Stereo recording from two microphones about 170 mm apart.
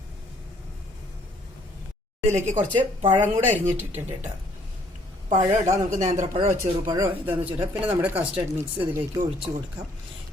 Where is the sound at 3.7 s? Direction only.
10° right (ahead or behind).